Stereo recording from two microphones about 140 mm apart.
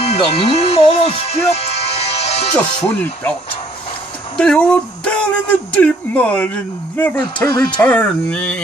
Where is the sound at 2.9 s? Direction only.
10° left (ahead or behind).